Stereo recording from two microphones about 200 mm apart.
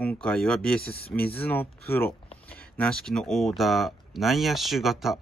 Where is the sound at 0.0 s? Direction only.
5° left (ahead or behind).